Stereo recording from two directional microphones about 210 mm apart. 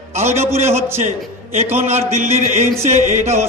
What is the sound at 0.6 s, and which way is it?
Speech, 10° right (ahead or behind).